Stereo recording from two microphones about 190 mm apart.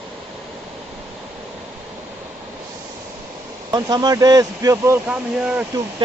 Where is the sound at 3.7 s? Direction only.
20° right (ahead or behind).